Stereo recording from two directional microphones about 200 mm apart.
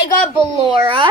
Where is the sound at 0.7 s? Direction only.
25° right (ahead or behind).